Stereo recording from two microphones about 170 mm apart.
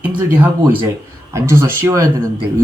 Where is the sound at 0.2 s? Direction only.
10° right (ahead or behind).